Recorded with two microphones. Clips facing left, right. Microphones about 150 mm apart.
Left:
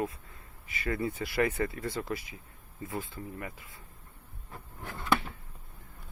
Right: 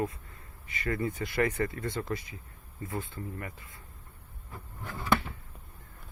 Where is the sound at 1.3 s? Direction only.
15° left (ahead or behind).